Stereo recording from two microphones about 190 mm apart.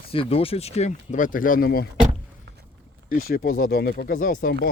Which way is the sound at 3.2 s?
55° left (ahead or behind).